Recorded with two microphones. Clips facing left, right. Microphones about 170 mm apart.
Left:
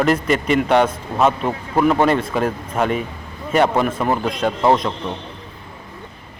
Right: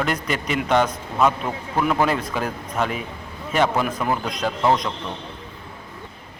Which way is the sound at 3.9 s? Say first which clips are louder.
Left 4 dB; 30° left (ahead or behind).